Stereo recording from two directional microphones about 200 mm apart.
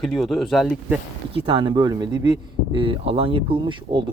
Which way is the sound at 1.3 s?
25° right (ahead or behind).